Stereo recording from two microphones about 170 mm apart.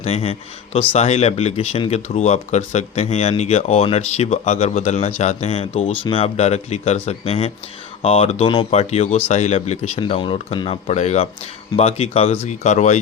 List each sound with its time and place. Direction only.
0.0 s speech: 35° left (ahead or behind)